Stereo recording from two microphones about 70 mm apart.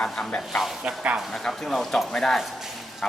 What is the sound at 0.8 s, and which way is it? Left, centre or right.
Speech, centre.